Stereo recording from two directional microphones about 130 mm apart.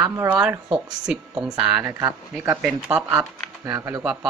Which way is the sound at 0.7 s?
5° right (ahead or behind).